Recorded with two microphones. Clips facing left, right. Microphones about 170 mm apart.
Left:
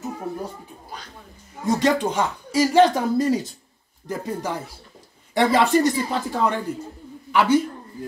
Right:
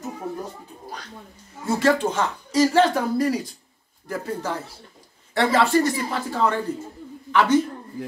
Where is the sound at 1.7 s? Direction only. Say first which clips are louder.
Even; 15° left (ahead or behind).